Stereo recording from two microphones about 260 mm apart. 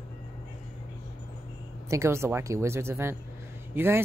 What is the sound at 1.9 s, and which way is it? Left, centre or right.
Speech, centre.